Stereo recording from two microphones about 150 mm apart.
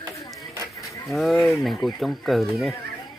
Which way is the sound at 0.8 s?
Centre (ahead or behind).